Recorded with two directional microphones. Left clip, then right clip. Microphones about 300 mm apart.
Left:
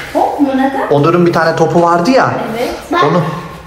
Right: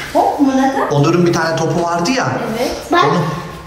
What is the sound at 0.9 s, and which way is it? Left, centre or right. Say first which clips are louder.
A man's voice: left 4 dB; centre.